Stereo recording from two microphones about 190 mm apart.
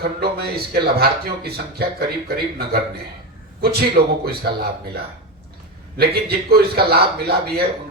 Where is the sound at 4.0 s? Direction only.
50° right (ahead or behind).